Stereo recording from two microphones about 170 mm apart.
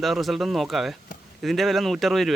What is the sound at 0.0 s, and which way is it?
Speech, centre (ahead or behind).